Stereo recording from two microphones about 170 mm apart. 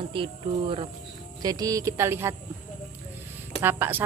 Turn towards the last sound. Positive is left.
turn(degrees=-10)  # may be behind; listen again after turning